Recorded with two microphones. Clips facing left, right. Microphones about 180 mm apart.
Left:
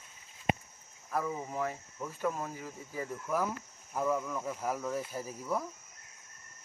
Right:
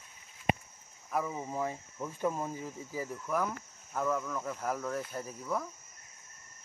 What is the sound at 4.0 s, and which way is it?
Speech, 10° left (ahead or behind).